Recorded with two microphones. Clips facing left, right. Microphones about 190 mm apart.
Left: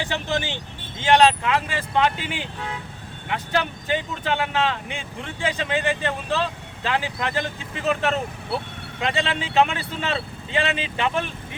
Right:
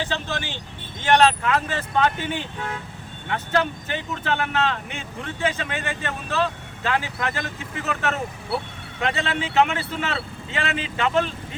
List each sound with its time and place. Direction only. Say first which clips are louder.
0.0 s speech: left 2 dB; 15° left (ahead or behind)